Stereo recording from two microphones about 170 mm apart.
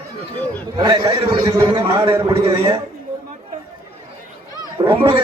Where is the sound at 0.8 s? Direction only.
25° right (ahead or behind).